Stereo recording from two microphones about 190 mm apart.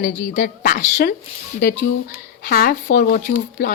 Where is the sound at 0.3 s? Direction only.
50° left (ahead or behind).